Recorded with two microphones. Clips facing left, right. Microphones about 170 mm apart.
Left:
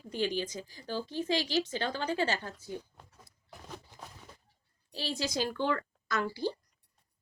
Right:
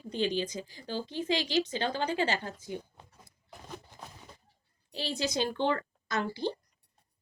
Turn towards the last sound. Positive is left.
turn(degrees=-20)  # may be behind; listen again after turning